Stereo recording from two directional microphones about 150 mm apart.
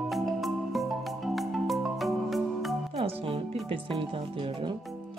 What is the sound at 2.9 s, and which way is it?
Music, 40° right (ahead or behind).